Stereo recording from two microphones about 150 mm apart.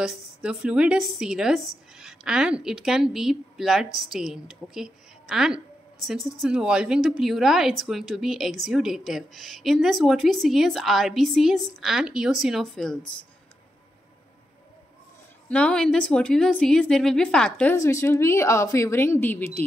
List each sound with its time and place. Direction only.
0.0 s a woman's voice: 5° right (ahead or behind)
15.5 s a woman's voice: 5° left (ahead or behind)
17.7 s a woman's voice: 20° left (ahead or behind)